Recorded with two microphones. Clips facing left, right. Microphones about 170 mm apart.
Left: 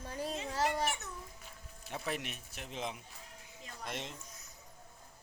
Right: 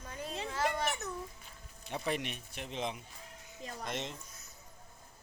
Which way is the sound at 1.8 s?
5° left (ahead or behind).